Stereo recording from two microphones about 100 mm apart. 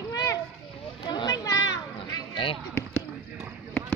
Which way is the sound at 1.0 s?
40° left (ahead or behind).